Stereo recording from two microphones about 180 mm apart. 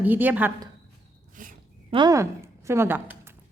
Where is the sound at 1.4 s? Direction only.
50° right (ahead or behind).